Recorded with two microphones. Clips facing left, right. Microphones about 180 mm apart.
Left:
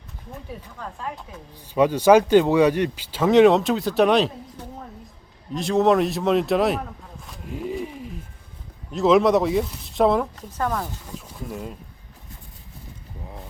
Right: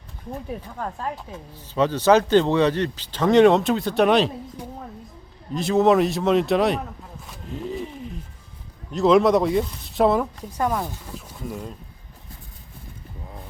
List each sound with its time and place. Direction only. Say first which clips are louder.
0.5 s speech: right 5 dB; 55° right (ahead or behind)
1.7 s speech: left 2 dB; 10° left (ahead or behind)
4.6 s a sound: right 2 dB; 10° right (ahead or behind)
5.5 s speech: right 1 dB; centre (ahead or behind)
7.4 s pigeon: left 1 dB; 10° left (ahead or behind)
8.9 s speech: even; centre (ahead or behind)
11.4 s speech: right 1 dB; 5° left (ahead or behind)